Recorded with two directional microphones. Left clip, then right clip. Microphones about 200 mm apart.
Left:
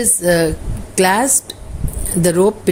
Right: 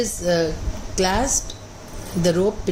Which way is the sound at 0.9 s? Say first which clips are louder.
Left 7 dB; 50° left (ahead or behind).